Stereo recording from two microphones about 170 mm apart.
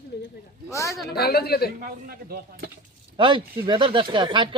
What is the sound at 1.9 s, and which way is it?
Speech, 60° right (ahead or behind).